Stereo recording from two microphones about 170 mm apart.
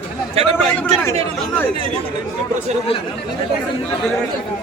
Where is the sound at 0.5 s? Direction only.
10° left (ahead or behind).